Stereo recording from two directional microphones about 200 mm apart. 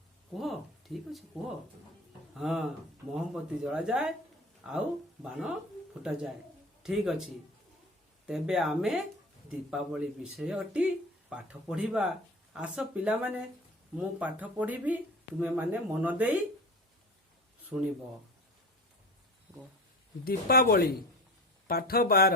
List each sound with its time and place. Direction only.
2.4 s speech: centre (ahead or behind)
8.3 s speech: centre (ahead or behind)
17.7 s speech: 15° right (ahead or behind)
20.2 s speech: 50° left (ahead or behind)